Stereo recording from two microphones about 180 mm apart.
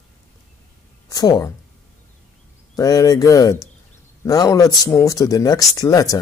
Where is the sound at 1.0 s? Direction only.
20° left (ahead or behind).